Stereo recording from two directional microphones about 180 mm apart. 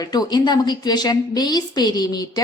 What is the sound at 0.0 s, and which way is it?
A woman's voice, 20° left (ahead or behind).